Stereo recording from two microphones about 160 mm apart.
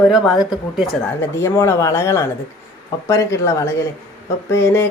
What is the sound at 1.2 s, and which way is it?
Mantra, 15° left (ahead or behind).